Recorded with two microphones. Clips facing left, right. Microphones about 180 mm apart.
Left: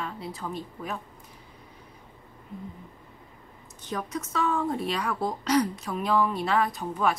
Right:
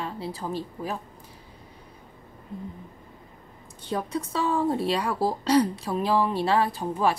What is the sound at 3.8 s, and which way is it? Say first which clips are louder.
A woman's voice: right 4 dB; 30° right (ahead or behind).